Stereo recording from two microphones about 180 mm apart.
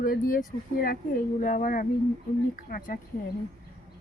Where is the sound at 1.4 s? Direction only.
45° left (ahead or behind).